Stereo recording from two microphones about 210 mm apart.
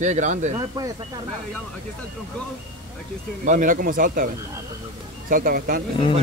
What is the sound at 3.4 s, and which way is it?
Speech, 40° right (ahead or behind).